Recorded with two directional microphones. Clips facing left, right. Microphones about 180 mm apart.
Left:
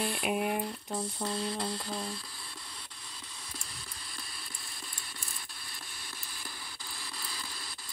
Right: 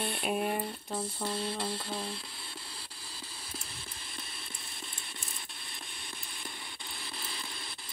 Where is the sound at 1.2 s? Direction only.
30° right (ahead or behind).